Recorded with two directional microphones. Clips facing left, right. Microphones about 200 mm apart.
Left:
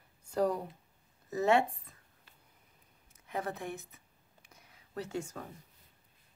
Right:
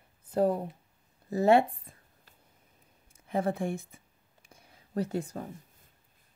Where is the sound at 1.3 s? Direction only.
35° right (ahead or behind).